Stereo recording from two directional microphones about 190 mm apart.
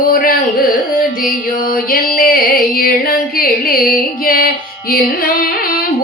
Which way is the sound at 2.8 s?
50° left (ahead or behind).